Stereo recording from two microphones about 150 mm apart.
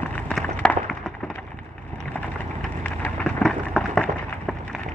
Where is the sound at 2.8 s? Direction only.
5° left (ahead or behind).